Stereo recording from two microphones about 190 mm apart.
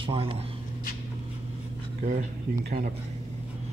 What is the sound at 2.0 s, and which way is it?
Speech, 40° right (ahead or behind).